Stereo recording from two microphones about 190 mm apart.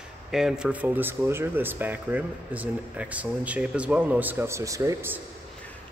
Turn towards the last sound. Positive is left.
turn(degrees=-15)  # may be behind; listen again after turning